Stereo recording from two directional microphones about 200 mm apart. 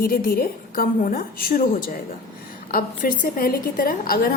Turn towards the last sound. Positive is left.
turn(degrees=45)  # may be behind; listen again after turning